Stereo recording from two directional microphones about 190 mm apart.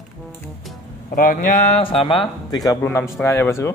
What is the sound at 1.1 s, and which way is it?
A man's voice, 45° left (ahead or behind).